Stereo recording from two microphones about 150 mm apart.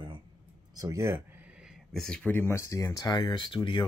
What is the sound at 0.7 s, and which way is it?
Speech, 20° right (ahead or behind).